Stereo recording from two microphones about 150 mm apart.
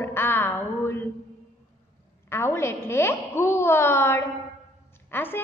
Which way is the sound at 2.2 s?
15° left (ahead or behind).